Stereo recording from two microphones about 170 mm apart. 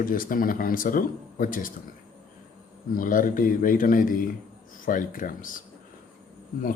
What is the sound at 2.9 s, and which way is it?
Speech, 50° left (ahead or behind).